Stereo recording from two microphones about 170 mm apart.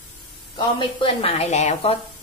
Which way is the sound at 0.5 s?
30° left (ahead or behind).